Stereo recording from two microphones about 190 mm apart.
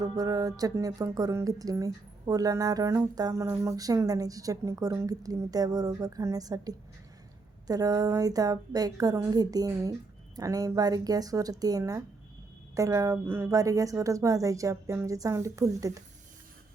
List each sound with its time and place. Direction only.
0.0 s a woman's voice: 20° right (ahead or behind)